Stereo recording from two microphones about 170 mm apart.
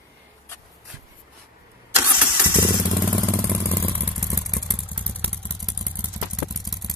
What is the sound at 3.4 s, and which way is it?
Vehicle, 15° left (ahead or behind).